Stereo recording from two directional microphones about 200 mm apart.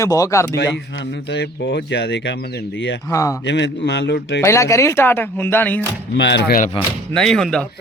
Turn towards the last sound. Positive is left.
turn(degrees=5)  # may be behind; listen again after turning